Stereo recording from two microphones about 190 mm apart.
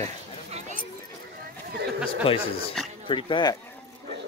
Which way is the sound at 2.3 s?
30° left (ahead or behind).